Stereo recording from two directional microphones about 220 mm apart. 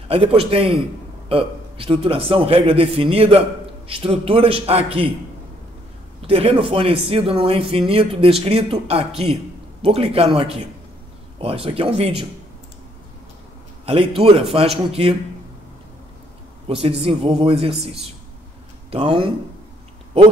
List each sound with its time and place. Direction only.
0.1 s a man's voice: 25° right (ahead or behind)
6.2 s a man's voice: 25° right (ahead or behind)
13.8 s a man's voice: 25° right (ahead or behind)
16.6 s a man's voice: 25° right (ahead or behind)